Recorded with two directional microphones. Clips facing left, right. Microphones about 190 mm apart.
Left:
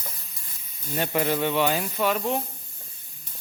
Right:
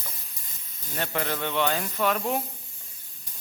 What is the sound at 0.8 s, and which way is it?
Speech, 15° left (ahead or behind).